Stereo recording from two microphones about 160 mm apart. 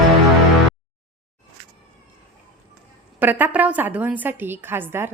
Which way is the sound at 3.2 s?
10° right (ahead or behind).